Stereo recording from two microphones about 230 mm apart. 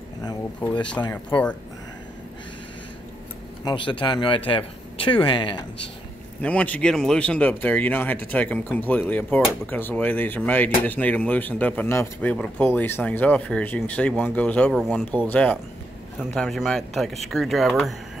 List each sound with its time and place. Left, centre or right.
0.2 s speech: centre
3.6 s speech: left
6.4 s speech: centre